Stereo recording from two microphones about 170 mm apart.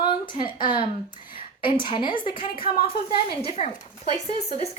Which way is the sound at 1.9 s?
30° left (ahead or behind).